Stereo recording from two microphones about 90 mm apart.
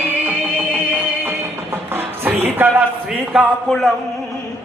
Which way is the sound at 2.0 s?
25° right (ahead or behind).